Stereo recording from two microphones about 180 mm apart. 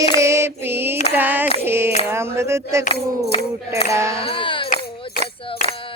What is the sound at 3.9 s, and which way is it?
Cutlery, 15° right (ahead or behind).